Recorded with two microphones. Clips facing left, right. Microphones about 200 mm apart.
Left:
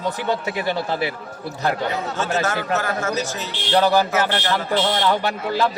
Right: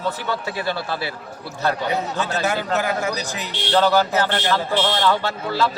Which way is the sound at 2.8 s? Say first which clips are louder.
Even; 15° right (ahead or behind).